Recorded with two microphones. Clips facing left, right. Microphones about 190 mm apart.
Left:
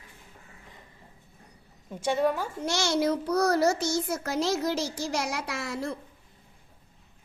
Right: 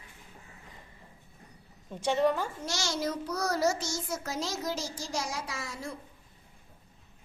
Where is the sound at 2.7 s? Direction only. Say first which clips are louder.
Left 9 dB; 60° left (ahead or behind).